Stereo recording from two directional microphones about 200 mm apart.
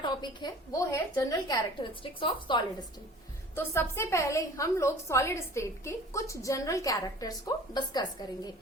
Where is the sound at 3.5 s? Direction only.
10° left (ahead or behind).